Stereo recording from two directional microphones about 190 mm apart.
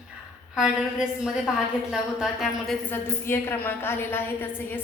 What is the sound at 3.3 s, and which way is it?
A woman's voice, 10° left (ahead or behind).